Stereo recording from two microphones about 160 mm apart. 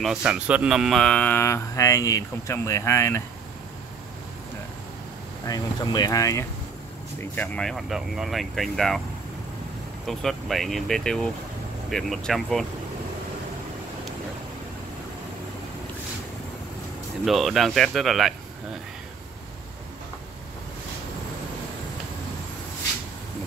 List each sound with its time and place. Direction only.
0.0 s speech: 5° right (ahead or behind); by 3.2 s 15° left (ahead or behind)
5.5 s speech: 25° left (ahead or behind)
7.3 s speech: 5° left (ahead or behind)
10.0 s speech: centre (ahead or behind)
17.2 s speech: centre (ahead or behind)